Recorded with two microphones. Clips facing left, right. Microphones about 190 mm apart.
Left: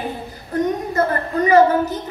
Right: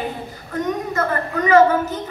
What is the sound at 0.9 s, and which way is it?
A woman's voice, 35° left (ahead or behind).